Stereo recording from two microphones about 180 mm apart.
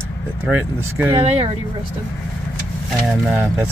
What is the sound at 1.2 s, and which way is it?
Speech, 35° right (ahead or behind).